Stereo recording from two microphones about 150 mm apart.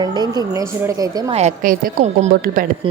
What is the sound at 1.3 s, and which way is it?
A woman's voice, 50° right (ahead or behind).